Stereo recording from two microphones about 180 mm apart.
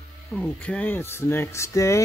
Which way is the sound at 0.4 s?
5° left (ahead or behind).